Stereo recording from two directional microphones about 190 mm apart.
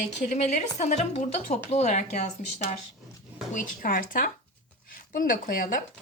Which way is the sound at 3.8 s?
50° left (ahead or behind).